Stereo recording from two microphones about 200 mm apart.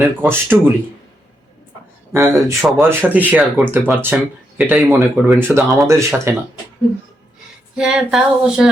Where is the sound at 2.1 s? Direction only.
15° right (ahead or behind).